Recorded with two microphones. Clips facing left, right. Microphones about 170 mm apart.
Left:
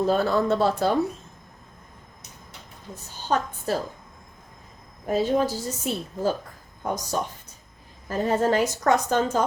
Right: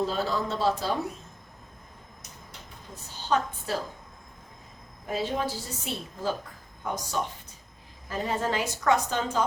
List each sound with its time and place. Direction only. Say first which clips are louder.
0.1 s speech: left 8 dB; 55° left (ahead or behind)
3.3 s a woman's voice: left 3 dB; 50° left (ahead or behind)
5.0 s a woman's voice: left 7 dB; 45° left (ahead or behind)